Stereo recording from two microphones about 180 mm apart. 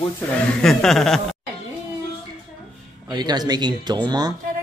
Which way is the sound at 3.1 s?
25° right (ahead or behind).